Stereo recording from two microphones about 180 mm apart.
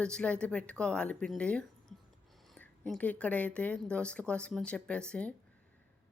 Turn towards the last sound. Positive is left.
turn(degrees=5)  # may be behind; listen again after turning